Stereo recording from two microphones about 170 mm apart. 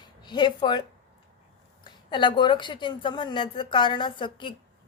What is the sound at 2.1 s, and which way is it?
A woman's voice, 30° left (ahead or behind).